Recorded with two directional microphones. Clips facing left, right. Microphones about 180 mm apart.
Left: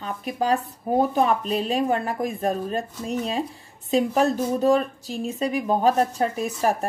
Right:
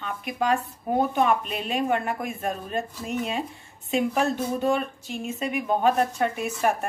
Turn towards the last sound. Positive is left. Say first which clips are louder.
# left 1 dB
turn(degrees=35)  # may be behind; listen again after turning